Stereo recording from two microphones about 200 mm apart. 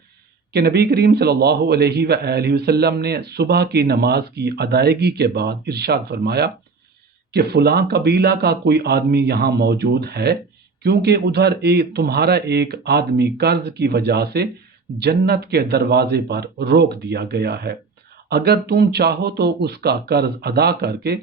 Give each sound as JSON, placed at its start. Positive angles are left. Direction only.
{"t": 0.5, "sound": "a man's voice", "side_deg": -55}